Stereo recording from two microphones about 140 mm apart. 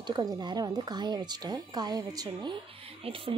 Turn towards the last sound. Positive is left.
turn(degrees=-40)  # may be behind; listen again after turning